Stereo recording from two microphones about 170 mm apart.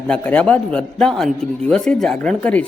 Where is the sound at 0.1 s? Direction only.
5° left (ahead or behind).